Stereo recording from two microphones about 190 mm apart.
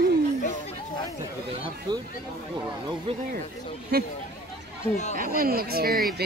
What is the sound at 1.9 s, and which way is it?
Speech, 25° right (ahead or behind).